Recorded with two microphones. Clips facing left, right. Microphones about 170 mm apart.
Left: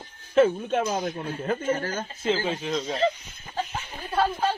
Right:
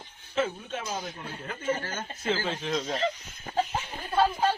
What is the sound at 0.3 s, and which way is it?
Speech, 55° left (ahead or behind).